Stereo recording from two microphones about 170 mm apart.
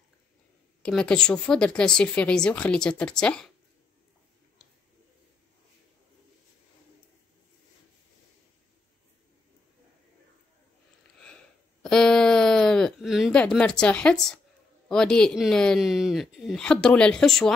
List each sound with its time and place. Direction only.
0.8 s speech: 5° left (ahead or behind)
11.1 s a sound: 5° left (ahead or behind)
14.9 s speech: 5° left (ahead or behind)